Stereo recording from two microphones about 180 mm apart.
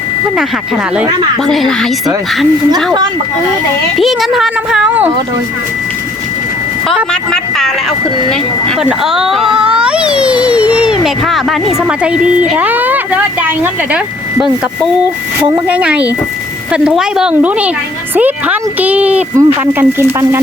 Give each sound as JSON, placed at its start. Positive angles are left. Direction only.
{"t": 1.5, "sound": "speech", "side_deg": 0}
{"t": 2.7, "sound": "speech", "side_deg": -20}
{"t": 3.9, "sound": "speech", "side_deg": 0}
{"t": 6.8, "sound": "speech", "side_deg": 5}
{"t": 8.8, "sound": "speech", "side_deg": -5}